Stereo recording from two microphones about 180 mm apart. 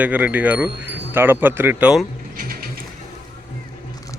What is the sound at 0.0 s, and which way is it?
Speech, 10° right (ahead or behind).